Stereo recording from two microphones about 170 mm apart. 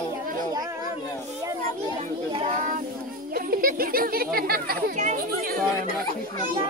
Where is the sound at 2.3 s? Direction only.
45° right (ahead or behind).